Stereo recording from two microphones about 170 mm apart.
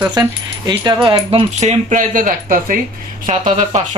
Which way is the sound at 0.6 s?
25° right (ahead or behind).